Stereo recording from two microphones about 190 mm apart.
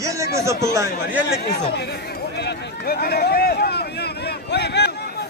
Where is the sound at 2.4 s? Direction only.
55° left (ahead or behind).